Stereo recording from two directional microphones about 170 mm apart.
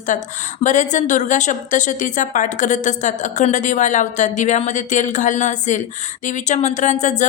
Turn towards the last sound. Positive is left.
turn(degrees=45)  # may be behind; listen again after turning